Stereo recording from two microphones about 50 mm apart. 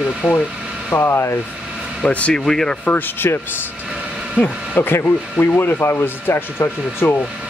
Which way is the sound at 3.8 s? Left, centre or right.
Centre.